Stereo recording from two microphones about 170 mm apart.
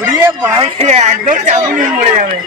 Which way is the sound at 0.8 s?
40° right (ahead or behind).